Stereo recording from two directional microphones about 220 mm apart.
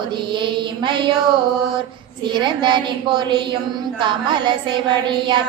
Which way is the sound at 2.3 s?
20° right (ahead or behind).